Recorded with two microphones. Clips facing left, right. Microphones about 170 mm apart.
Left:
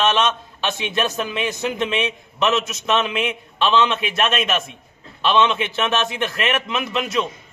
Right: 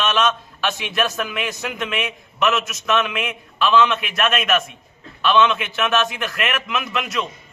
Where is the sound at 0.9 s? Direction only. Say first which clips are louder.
Left 1 dB; 25° left (ahead or behind).